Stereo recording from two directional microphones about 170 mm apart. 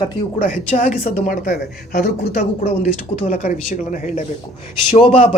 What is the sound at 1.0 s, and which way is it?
Speech, 50° left (ahead or behind).